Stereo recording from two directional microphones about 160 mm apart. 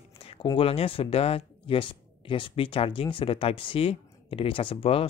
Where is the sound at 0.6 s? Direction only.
35° left (ahead or behind).